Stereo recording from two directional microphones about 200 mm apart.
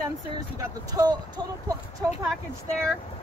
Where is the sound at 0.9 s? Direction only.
20° right (ahead or behind).